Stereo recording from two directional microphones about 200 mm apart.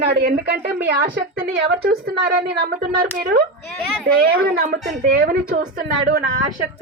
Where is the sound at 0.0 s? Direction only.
55° right (ahead or behind).